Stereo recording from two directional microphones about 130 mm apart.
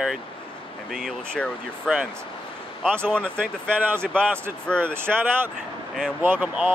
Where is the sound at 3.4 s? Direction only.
10° right (ahead or behind).